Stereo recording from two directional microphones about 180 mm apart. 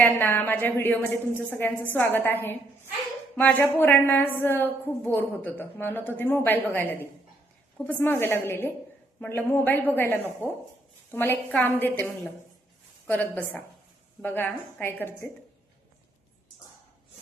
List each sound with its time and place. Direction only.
0.0 s a woman's voice: 10° left (ahead or behind)